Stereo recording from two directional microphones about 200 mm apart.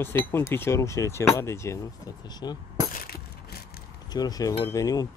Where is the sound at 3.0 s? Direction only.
50° left (ahead or behind).